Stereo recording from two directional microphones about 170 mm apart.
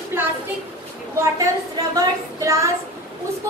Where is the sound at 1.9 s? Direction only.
20° right (ahead or behind).